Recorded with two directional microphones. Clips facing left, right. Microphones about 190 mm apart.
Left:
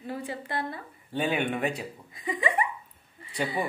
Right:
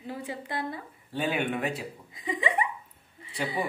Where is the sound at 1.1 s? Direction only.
Centre (ahead or behind).